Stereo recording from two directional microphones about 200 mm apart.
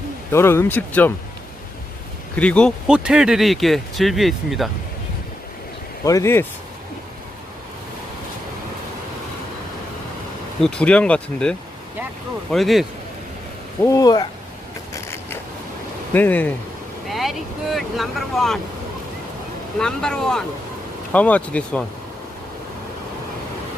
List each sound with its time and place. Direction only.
0.3 s speech: 10° left (ahead or behind)
2.3 s speech: 5° left (ahead or behind)
6.1 s speech: 15° left (ahead or behind)
10.6 s speech: 5° left (ahead or behind)
13.8 s speech: 15° left (ahead or behind)
14.9 s a sound: 15° left (ahead or behind)
16.1 s speech: 10° left (ahead or behind)
19.8 s speech: 5° left (ahead or behind)